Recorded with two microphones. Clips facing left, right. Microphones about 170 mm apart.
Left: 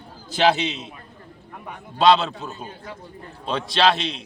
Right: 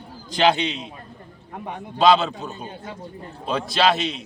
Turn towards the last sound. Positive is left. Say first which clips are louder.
# even
turn(degrees=0)  # may be behind; listen again after turning